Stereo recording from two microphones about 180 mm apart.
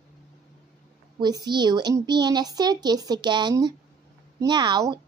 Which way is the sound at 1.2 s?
25° right (ahead or behind).